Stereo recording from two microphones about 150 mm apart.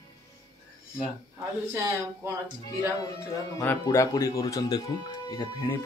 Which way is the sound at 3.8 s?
25° left (ahead or behind).